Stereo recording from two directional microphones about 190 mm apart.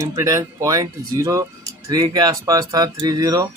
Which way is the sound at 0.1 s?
20° right (ahead or behind).